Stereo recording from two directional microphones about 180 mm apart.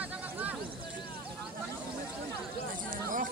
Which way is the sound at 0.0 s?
10° right (ahead or behind).